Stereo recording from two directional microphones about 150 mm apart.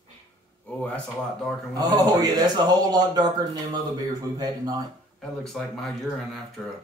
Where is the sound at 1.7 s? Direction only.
25° right (ahead or behind).